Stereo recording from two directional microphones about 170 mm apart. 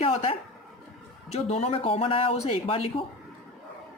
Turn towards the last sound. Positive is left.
turn(degrees=35)  # may be behind; listen again after turning